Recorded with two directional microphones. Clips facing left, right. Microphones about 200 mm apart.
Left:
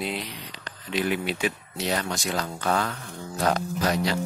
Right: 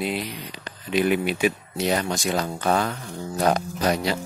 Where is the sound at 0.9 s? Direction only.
15° right (ahead or behind).